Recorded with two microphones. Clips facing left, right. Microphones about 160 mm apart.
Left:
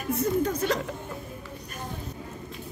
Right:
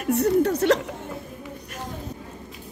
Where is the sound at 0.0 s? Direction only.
70° right (ahead or behind).